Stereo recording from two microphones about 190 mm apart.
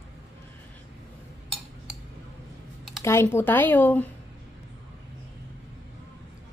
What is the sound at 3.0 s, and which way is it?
Speech, 15° left (ahead or behind).